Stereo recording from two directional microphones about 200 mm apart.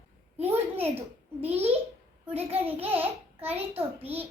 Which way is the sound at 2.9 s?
10° right (ahead or behind).